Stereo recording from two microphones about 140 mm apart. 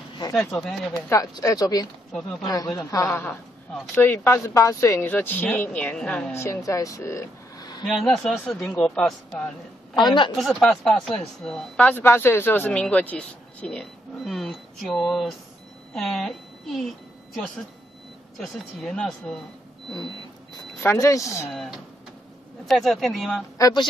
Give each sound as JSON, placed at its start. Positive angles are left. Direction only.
{"t": 0.3, "sound": "speech", "side_deg": 0}
{"t": 0.9, "sound": "speech", "side_deg": 20}
{"t": 2.1, "sound": "speech", "side_deg": 0}
{"t": 2.4, "sound": "speech", "side_deg": 25}
{"t": 3.7, "sound": "speech", "side_deg": 0}
{"t": 4.0, "sound": "speech", "side_deg": 15}
{"t": 6.3, "sound": "speech", "side_deg": 20}
{"t": 7.8, "sound": "speech", "side_deg": 0}
{"t": 9.9, "sound": "a woman's voice", "side_deg": 35}
{"t": 10.3, "sound": "a woman's voice", "side_deg": 0}
{"t": 18.4, "sound": "speech", "side_deg": 0}
{"t": 20.8, "sound": "speech", "side_deg": 20}
{"t": 21.5, "sound": "speech", "side_deg": 0}
{"t": 23.6, "sound": "a woman's voice", "side_deg": 30}